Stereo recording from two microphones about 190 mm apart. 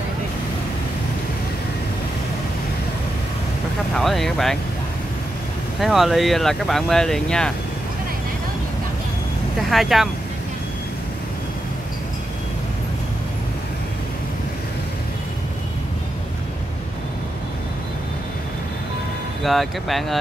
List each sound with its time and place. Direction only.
3.9 s speech: centre (ahead or behind)
5.8 s speech: centre (ahead or behind)
9.7 s speech: centre (ahead or behind)
19.4 s speech: centre (ahead or behind)